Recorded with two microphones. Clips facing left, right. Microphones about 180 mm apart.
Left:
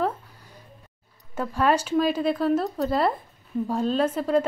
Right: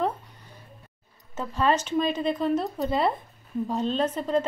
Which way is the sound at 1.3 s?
10° left (ahead or behind).